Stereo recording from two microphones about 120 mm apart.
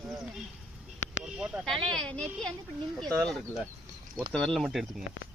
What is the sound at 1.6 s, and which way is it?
Speech, 5° left (ahead or behind).